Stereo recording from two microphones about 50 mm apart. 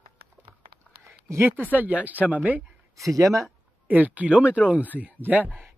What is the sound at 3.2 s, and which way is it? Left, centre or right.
Speech, right.